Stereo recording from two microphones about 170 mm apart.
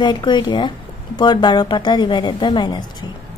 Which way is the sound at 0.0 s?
25° left (ahead or behind).